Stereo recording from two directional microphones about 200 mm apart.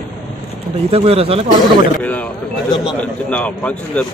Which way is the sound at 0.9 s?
30° right (ahead or behind).